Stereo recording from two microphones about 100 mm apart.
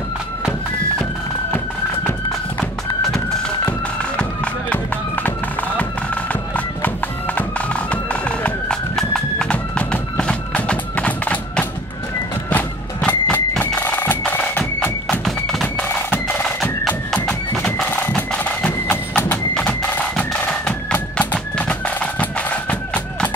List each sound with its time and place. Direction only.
4.2 s music: 15° left (ahead or behind)
7.3 s music: 15° left (ahead or behind)
15.2 s music: 5° left (ahead or behind)
16.4 s bagpipes: 10° left (ahead or behind)
17.8 s music: 15° left (ahead or behind)